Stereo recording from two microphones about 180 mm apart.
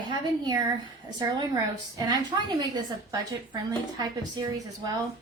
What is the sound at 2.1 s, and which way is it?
Speech, 25° right (ahead or behind).